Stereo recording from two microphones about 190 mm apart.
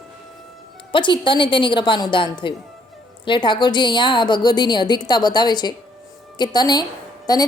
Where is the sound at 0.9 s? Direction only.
25° left (ahead or behind).